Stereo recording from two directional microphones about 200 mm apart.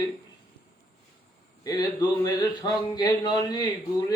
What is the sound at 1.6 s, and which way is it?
A man's voice, 20° left (ahead or behind).